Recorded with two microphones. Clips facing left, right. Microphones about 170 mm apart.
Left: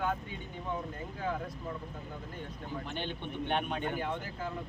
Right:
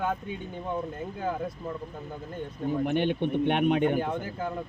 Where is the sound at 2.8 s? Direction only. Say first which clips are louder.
Right 15 dB; 60° right (ahead or behind).